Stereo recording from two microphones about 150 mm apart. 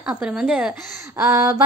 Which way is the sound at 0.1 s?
5° right (ahead or behind).